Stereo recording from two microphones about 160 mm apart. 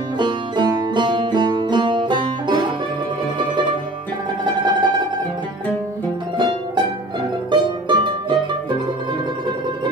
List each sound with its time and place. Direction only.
0.2 s music: 25° right (ahead or behind)
4.5 s music: 30° right (ahead or behind)
6.3 s music: 30° right (ahead or behind)
7.5 s mandolin: 30° right (ahead or behind)